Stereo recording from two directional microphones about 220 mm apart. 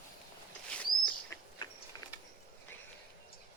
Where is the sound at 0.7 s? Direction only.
5° left (ahead or behind).